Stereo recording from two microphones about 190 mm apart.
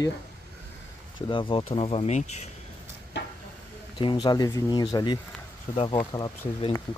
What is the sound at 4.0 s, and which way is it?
Speech, 25° left (ahead or behind).